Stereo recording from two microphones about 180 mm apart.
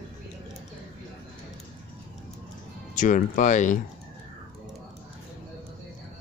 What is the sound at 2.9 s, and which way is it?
Speech, 45° left (ahead or behind).